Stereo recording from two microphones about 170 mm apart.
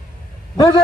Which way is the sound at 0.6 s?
25° left (ahead or behind).